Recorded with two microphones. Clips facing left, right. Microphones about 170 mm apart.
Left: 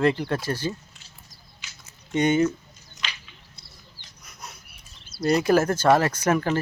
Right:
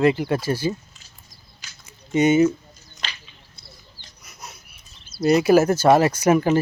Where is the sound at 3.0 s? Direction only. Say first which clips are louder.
Right 1 dB; 70° left (ahead or behind).